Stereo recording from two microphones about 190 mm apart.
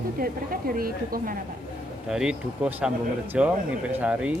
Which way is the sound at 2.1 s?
5° right (ahead or behind).